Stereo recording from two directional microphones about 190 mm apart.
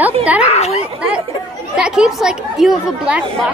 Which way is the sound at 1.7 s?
5° right (ahead or behind).